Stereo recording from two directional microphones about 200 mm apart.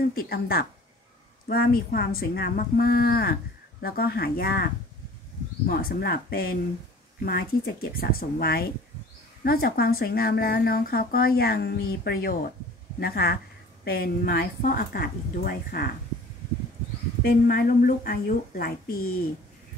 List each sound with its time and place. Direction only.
0.0 s a woman's voice: 50° left (ahead or behind)
5.7 s a woman's voice: 50° left (ahead or behind)
17.2 s a woman's voice: 50° left (ahead or behind)